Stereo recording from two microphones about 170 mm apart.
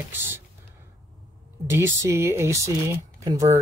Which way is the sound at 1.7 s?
15° right (ahead or behind).